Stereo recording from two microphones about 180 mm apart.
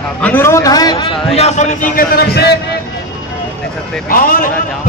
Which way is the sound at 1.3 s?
35° left (ahead or behind).